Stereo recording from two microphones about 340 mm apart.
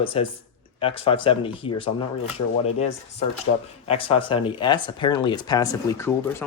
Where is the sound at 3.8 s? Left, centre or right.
Centre.